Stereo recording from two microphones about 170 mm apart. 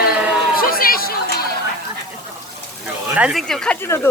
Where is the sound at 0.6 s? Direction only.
60° left (ahead or behind).